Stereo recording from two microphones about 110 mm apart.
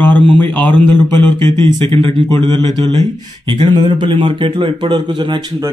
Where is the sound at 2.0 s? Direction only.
45° right (ahead or behind).